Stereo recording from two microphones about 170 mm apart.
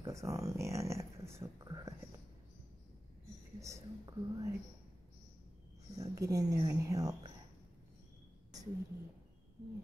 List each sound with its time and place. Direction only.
0.0 s speech: 20° right (ahead or behind)
3.5 s speech: 20° right (ahead or behind)
5.9 s speech: 20° right (ahead or behind)